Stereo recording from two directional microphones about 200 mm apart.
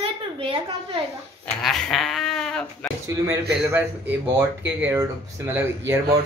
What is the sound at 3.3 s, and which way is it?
Speech, 10° right (ahead or behind).